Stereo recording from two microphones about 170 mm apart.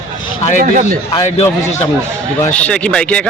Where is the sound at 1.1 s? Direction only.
30° left (ahead or behind).